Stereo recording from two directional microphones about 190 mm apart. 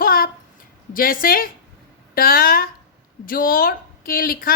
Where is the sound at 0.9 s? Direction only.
50° left (ahead or behind).